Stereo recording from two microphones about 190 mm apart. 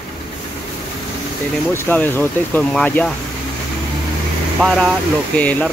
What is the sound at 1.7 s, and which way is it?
Speech, 10° left (ahead or behind).